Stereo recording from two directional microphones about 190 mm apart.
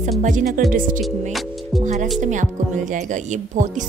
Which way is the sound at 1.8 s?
40° right (ahead or behind).